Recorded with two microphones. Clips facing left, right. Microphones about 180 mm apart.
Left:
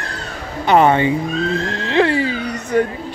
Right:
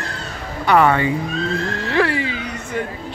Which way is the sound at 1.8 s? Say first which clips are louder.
Left 4 dB; 20° left (ahead or behind).